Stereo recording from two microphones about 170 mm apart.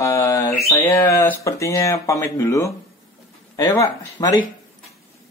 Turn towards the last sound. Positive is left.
turn(degrees=20)  # may be behind; listen again after turning